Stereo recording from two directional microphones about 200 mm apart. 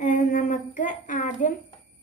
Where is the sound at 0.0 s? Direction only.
40° left (ahead or behind).